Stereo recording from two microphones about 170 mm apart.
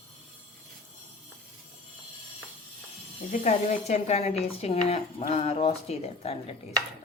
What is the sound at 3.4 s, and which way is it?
Speech, 40° left (ahead or behind).